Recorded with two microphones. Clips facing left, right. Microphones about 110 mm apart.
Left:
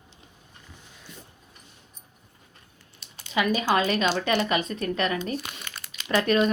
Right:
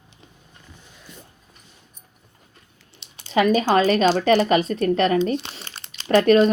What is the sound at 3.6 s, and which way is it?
Speech, 35° right (ahead or behind).